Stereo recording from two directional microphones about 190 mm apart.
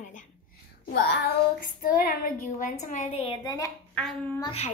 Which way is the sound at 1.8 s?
50° left (ahead or behind).